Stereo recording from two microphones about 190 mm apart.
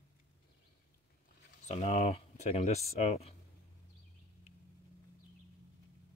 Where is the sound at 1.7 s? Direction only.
35° left (ahead or behind).